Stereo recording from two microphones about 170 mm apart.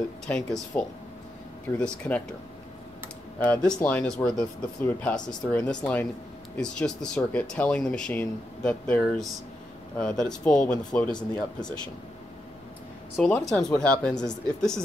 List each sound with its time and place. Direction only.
0.5 s speech: 5° left (ahead or behind)
3.3 s speech: 10° left (ahead or behind)
11.1 s speech: 25° left (ahead or behind)
13.1 s speech: centre (ahead or behind)